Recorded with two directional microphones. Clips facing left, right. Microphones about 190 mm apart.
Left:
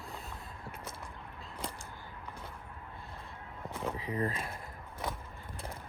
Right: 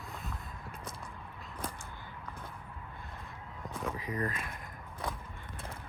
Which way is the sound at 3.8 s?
30° left (ahead or behind).